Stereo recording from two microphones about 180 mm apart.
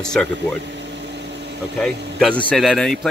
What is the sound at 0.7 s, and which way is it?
Vehicle, 75° right (ahead or behind).